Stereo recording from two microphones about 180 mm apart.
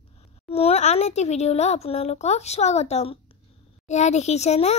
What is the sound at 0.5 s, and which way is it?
A child's voice, 35° left (ahead or behind).